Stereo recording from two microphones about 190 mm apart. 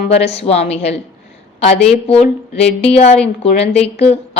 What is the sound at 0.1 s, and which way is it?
Speech, 35° left (ahead or behind).